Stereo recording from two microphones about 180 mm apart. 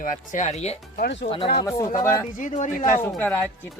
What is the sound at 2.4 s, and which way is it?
Speech, 40° left (ahead or behind).